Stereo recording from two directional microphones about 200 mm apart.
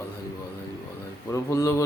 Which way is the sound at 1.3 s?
15° left (ahead or behind).